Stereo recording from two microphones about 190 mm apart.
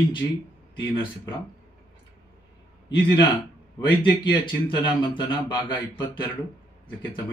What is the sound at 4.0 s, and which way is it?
A man's voice, 25° left (ahead or behind).